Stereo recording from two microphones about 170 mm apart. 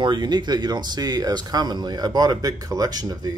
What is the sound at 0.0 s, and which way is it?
Speech, 25° right (ahead or behind).